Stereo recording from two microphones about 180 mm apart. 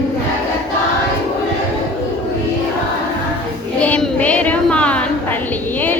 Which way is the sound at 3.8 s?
5° left (ahead or behind).